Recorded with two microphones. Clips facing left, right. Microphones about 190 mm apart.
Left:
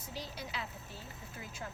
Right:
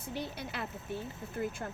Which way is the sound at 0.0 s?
55° right (ahead or behind).